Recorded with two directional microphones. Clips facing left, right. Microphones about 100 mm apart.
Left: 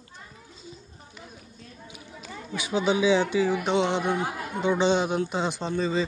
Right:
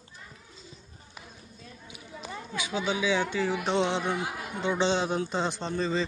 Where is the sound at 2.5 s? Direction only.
20° left (ahead or behind).